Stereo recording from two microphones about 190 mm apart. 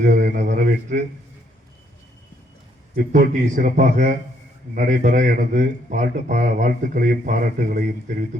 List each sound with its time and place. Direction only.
0.1 s a man's voice: 45° right (ahead or behind)
2.9 s a man's voice: 45° right (ahead or behind)